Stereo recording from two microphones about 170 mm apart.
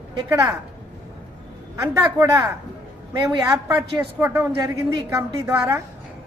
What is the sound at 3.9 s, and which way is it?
A woman's voice, 15° right (ahead or behind).